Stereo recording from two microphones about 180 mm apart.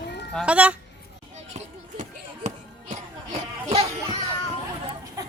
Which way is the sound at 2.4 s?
40° right (ahead or behind).